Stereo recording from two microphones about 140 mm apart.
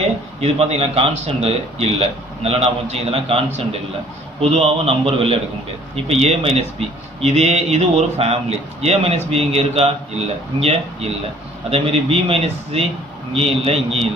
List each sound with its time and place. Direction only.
0.4 s speech: 50° right (ahead or behind)
11.7 s speech: 45° right (ahead or behind)